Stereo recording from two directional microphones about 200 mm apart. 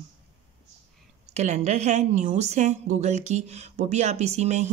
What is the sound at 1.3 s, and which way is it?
Speech, 35° right (ahead or behind).